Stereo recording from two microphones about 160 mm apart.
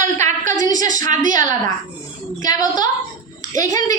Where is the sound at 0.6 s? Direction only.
25° left (ahead or behind).